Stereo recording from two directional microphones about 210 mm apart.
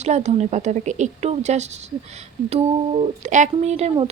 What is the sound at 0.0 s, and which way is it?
Speech, 30° right (ahead or behind).